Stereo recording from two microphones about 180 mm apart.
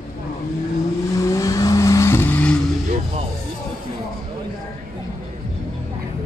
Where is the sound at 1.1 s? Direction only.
15° left (ahead or behind).